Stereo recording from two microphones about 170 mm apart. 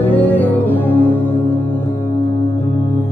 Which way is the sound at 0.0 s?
10° left (ahead or behind).